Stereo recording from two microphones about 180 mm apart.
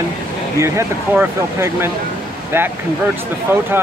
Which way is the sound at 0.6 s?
15° right (ahead or behind).